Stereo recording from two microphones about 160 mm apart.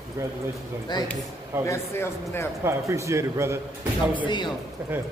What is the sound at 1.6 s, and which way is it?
Speech, 15° left (ahead or behind).